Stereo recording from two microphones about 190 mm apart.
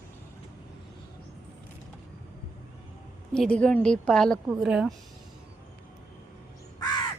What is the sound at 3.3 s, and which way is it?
A woman's voice, 5° left (ahead or behind).